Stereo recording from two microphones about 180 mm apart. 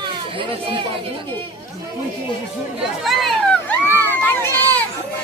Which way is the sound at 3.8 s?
10° left (ahead or behind).